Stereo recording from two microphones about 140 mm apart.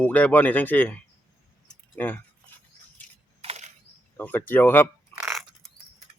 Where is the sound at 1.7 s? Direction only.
10° left (ahead or behind).